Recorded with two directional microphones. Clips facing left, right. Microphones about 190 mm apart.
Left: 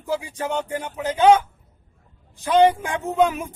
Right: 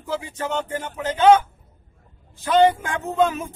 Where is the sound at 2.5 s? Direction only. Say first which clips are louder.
Even; 15° left (ahead or behind).